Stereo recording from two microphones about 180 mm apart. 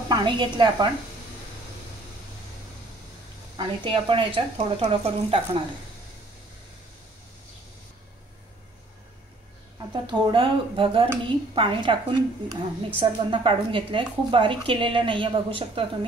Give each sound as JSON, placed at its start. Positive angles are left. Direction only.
{"t": 0.1, "sound": "speech", "side_deg": -25}
{"t": 3.5, "sound": "speech", "side_deg": -30}
{"t": 9.8, "sound": "speech", "side_deg": -25}